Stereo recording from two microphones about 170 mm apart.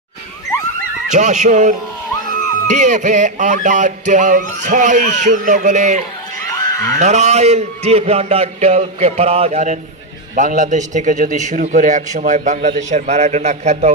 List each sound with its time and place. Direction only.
1.1 s a man's voice: 45° right (ahead or behind)